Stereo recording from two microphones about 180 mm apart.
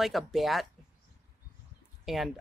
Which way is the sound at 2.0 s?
Centre (ahead or behind).